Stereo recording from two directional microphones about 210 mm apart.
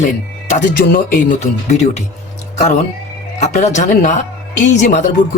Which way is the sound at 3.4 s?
35° left (ahead or behind).